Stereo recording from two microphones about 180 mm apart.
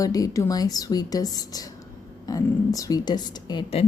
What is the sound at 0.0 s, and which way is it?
A woman's voice, 20° left (ahead or behind).